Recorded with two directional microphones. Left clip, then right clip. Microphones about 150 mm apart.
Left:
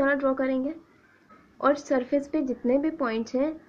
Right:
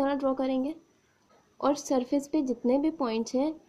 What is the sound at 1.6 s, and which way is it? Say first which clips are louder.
A woman's voice: left 3 dB; 65° right (ahead or behind).